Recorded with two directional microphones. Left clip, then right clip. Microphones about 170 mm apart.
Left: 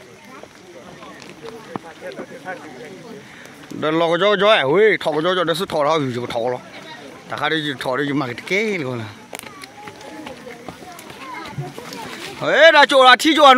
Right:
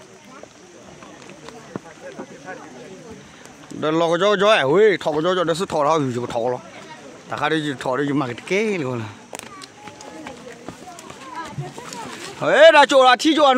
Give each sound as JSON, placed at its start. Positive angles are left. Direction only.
{"t": 3.8, "sound": "speech", "side_deg": -5}
{"t": 12.4, "sound": "speech", "side_deg": -25}
{"t": 13.0, "sound": "speech", "side_deg": 0}
{"t": 13.3, "sound": "speech", "side_deg": 15}